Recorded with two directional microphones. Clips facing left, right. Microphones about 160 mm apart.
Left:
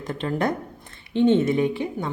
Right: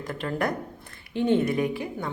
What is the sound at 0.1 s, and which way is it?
A woman's voice, 25° left (ahead or behind).